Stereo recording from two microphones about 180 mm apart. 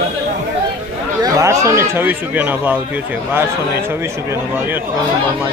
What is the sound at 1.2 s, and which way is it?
A man's voice, 20° right (ahead or behind).